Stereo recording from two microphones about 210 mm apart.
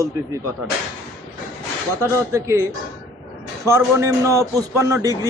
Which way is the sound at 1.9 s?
15° right (ahead or behind).